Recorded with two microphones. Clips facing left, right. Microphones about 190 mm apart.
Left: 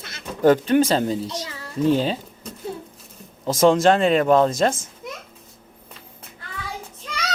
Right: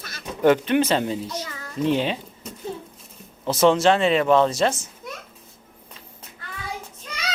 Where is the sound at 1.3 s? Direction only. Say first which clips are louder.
Left 1 dB; 30° left (ahead or behind).